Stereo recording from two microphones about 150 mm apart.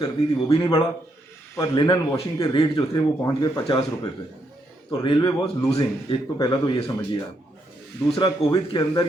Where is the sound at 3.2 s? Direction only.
20° left (ahead or behind).